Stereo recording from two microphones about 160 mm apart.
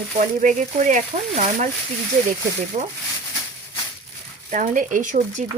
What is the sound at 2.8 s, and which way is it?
Speech, 45° right (ahead or behind).